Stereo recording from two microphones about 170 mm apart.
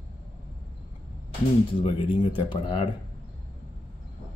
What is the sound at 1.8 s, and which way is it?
Speech, 30° left (ahead or behind).